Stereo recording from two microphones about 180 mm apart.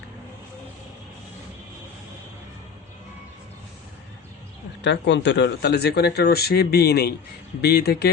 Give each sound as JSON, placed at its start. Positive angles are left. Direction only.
{"t": 4.8, "sound": "speech", "side_deg": 75}